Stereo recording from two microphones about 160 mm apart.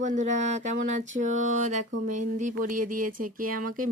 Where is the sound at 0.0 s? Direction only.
50° right (ahead or behind).